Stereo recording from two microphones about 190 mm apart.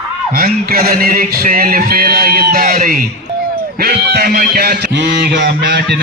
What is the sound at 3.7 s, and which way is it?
Fowl, 55° right (ahead or behind).